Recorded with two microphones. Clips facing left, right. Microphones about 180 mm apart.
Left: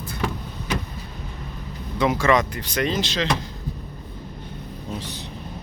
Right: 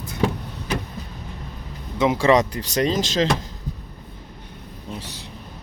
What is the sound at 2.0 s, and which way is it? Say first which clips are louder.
Speech: right 2 dB; 20° right (ahead or behind).